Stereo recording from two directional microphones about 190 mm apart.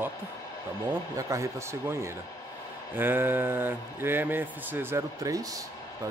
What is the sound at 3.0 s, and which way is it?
Speech, 10° right (ahead or behind).